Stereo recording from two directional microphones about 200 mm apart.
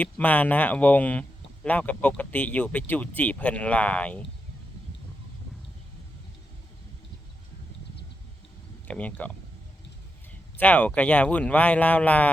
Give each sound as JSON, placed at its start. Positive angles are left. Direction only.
{"t": 0.0, "sound": "speech", "side_deg": 10}
{"t": 8.9, "sound": "speech", "side_deg": 5}
{"t": 10.6, "sound": "speech", "side_deg": 5}